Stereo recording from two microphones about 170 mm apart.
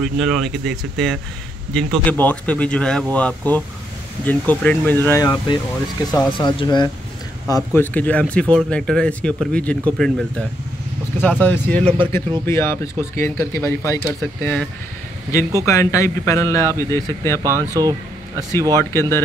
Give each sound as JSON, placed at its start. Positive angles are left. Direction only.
{"t": 0.0, "sound": "speech", "side_deg": 0}
{"t": 17.4, "sound": "speech", "side_deg": -20}
{"t": 18.8, "sound": "speech", "side_deg": 15}